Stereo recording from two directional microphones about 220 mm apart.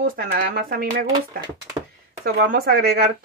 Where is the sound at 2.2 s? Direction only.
45° right (ahead or behind).